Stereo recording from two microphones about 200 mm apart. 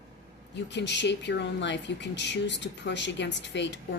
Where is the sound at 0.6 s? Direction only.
60° left (ahead or behind).